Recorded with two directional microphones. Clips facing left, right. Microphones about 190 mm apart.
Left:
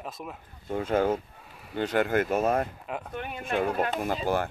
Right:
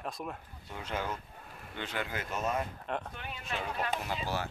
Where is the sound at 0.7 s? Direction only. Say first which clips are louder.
Left 12 dB; 50° left (ahead or behind).